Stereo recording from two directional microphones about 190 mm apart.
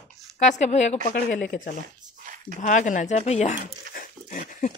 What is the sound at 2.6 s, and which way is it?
Speech, 40° left (ahead or behind).